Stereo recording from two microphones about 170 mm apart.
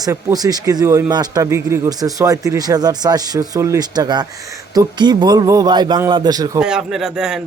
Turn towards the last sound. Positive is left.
turn(degrees=-5)  # may be behind; listen again after turning